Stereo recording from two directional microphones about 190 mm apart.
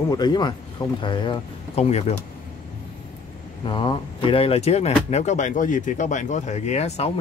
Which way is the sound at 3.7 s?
25° left (ahead or behind).